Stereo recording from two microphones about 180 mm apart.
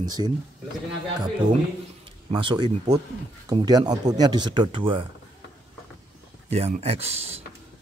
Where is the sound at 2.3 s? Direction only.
25° right (ahead or behind).